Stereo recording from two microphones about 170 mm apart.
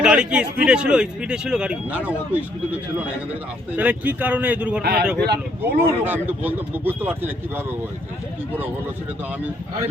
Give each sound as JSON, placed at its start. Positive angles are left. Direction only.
{"t": 0.0, "sound": "speech", "side_deg": -5}
{"t": 3.8, "sound": "speech", "side_deg": -10}
{"t": 4.8, "sound": "speech", "side_deg": -70}
{"t": 5.8, "sound": "speech", "side_deg": -10}